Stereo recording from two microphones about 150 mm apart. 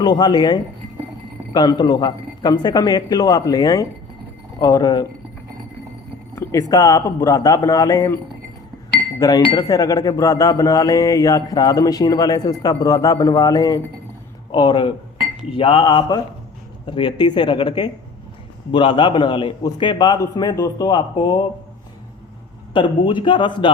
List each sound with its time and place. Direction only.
0.0 s speech: 30° left (ahead or behind)
6.3 s speech: 20° left (ahead or behind)
22.7 s speech: 35° left (ahead or behind)